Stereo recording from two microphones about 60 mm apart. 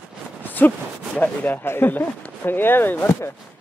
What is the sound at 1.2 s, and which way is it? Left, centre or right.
Speech, left.